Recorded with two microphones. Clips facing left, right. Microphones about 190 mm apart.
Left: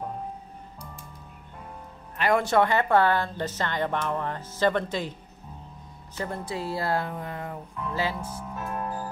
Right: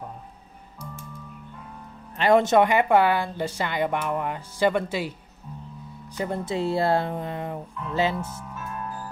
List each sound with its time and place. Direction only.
2.1 s a woman's voice: 25° right (ahead or behind); by 5.1 s 10° right (ahead or behind)
6.1 s speech: 20° right (ahead or behind)